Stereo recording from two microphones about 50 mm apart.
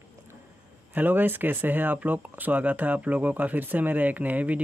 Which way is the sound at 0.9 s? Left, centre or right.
Right.